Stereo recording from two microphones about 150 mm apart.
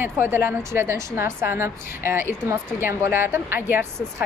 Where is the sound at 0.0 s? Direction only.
15° right (ahead or behind).